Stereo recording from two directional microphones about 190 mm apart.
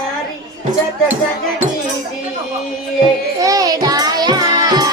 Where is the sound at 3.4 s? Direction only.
20° right (ahead or behind).